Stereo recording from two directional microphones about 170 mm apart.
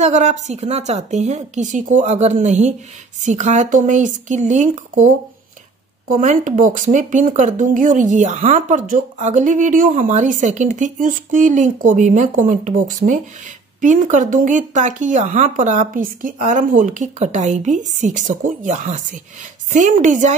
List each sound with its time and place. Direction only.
0.0 s speech: 40° right (ahead or behind)